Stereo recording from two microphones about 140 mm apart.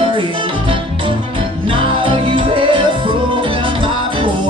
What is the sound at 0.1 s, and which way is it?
Music, 35° right (ahead or behind).